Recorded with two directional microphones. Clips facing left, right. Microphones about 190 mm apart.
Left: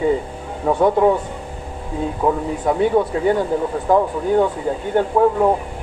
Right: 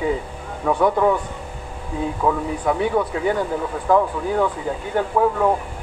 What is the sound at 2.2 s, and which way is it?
Speech, 25° left (ahead or behind).